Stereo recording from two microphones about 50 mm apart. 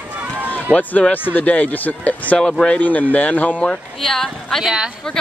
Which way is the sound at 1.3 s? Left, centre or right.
Left.